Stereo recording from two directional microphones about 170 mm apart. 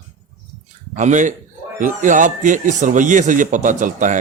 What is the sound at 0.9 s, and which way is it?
A man's voice, 45° right (ahead or behind).